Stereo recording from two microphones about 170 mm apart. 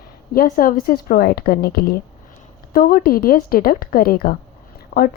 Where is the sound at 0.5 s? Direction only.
55° left (ahead or behind).